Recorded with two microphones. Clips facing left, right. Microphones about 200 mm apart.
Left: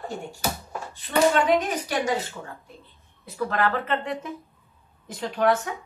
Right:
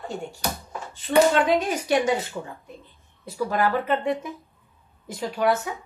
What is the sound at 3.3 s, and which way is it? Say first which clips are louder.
Speech: right 2 dB; 10° right (ahead or behind).